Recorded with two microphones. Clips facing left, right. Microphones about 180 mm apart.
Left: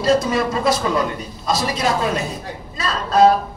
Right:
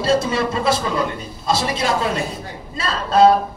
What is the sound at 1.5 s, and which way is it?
Speech, 30° right (ahead or behind).